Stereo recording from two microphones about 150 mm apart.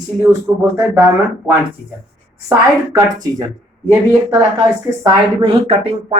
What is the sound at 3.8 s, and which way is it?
Speech, 20° right (ahead or behind).